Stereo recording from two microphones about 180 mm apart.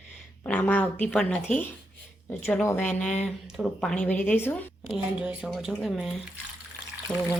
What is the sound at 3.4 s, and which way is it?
Speech, centre (ahead or behind).